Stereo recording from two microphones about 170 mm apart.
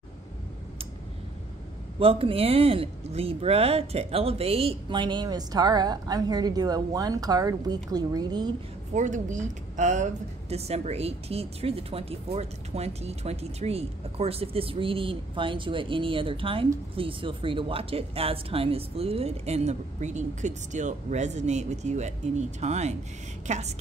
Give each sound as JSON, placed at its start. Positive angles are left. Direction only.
{"t": 2.0, "sound": "speech", "side_deg": -35}
{"t": 8.9, "sound": "a woman's voice", "side_deg": -45}